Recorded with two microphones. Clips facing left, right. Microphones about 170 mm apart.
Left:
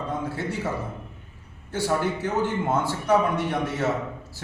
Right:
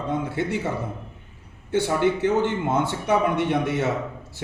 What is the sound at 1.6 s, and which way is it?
A man's voice, 20° right (ahead or behind).